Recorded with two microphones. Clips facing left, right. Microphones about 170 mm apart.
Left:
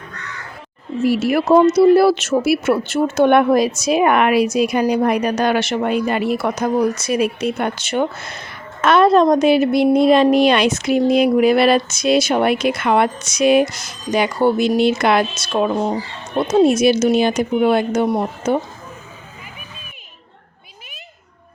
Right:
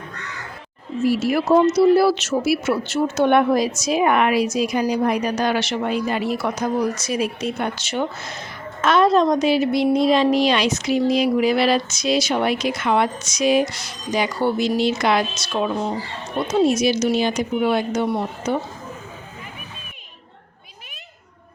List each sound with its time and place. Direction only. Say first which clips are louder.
1.0 s a woman's voice: left 3 dB; 60° left (ahead or behind); by 18.6 s 45° left (ahead or behind)